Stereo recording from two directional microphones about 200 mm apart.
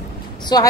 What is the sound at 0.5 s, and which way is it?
Speech, 20° left (ahead or behind).